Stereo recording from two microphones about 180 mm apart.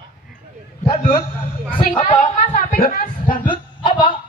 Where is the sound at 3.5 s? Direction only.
25° left (ahead or behind).